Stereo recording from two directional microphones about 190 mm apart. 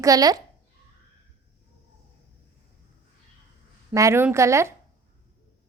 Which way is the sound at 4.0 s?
15° right (ahead or behind).